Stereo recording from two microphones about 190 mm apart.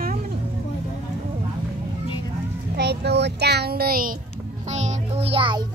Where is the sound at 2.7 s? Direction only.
60° right (ahead or behind).